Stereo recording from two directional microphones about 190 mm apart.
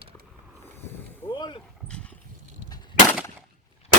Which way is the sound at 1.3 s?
25° left (ahead or behind).